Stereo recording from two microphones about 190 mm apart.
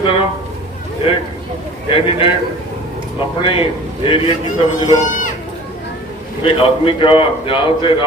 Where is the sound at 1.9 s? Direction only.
30° left (ahead or behind).